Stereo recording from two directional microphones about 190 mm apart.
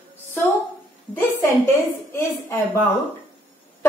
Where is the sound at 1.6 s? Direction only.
10° left (ahead or behind).